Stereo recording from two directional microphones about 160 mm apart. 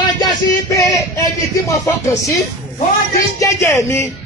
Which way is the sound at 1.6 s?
20° left (ahead or behind).